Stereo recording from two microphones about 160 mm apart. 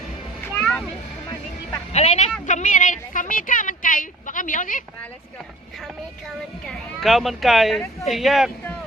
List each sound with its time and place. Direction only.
0.6 s music: centre (ahead or behind)
1.9 s a woman's voice: 45° left (ahead or behind)
5.8 s speech: centre (ahead or behind)